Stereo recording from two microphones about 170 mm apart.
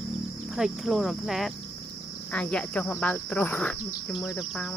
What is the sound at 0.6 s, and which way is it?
Speech, centre (ahead or behind).